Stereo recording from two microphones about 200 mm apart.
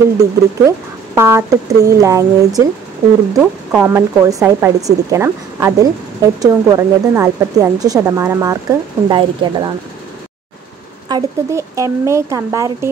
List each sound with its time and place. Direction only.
0.2 s a woman's voice: 15° right (ahead or behind)
11.1 s a woman's voice: 20° right (ahead or behind)